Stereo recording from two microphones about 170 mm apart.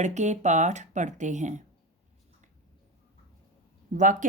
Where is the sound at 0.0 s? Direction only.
45° right (ahead or behind).